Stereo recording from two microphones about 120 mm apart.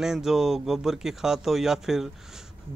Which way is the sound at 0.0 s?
5° right (ahead or behind).